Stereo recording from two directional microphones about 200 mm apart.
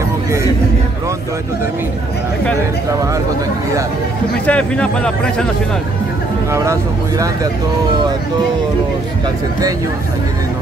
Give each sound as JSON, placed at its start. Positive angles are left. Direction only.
{"t": 2.9, "sound": "speech", "side_deg": -15}
{"t": 4.5, "sound": "speech", "side_deg": 5}
{"t": 6.5, "sound": "speech", "side_deg": -15}